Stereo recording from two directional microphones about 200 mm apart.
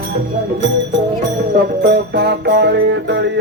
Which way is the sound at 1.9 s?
55° right (ahead or behind).